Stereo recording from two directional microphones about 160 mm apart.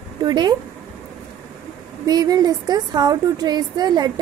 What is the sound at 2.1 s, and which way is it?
A woman's voice, 25° right (ahead or behind).